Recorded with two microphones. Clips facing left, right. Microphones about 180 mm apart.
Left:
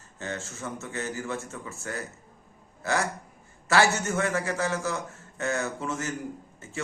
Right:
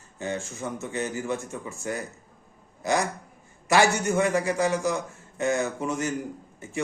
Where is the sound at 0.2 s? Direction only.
15° right (ahead or behind).